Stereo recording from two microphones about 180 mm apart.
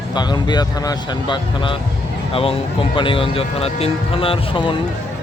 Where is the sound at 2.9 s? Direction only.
30° left (ahead or behind).